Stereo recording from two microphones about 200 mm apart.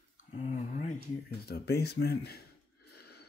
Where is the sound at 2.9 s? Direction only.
55° left (ahead or behind).